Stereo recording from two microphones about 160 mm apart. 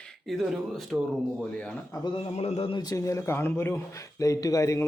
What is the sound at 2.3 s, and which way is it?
Speech, 40° left (ahead or behind).